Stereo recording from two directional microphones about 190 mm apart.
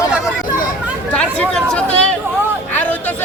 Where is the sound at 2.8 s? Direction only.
10° left (ahead or behind).